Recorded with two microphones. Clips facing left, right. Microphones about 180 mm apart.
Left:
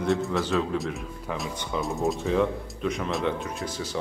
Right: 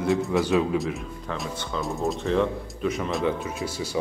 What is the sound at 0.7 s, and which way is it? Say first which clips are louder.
Speech: right 3 dB; centre (ahead or behind).